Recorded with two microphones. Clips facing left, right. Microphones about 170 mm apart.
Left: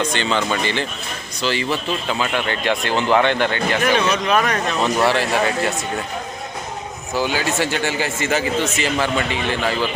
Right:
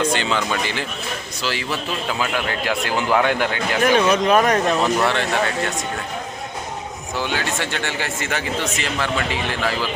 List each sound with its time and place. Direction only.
0.0 s speech: 5° right (ahead or behind)
3.9 s speech: 40° right (ahead or behind)
4.8 s speech: 5° left (ahead or behind)
7.2 s speech: 5° left (ahead or behind)